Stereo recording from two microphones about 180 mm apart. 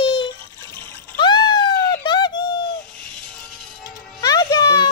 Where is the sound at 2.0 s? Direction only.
25° left (ahead or behind).